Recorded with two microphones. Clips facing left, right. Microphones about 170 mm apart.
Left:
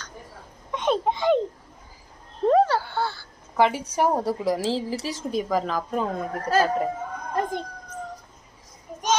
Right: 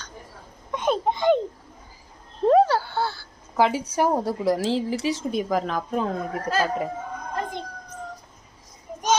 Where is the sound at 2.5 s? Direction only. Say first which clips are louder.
Right 2 dB; 10° right (ahead or behind).